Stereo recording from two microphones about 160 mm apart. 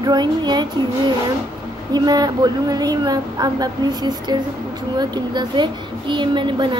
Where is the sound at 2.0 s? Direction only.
25° right (ahead or behind).